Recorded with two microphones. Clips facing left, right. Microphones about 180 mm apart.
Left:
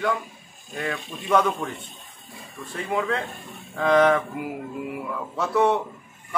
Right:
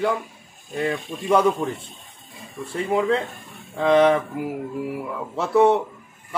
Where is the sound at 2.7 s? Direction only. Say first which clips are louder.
Right 5 dB; 30° right (ahead or behind).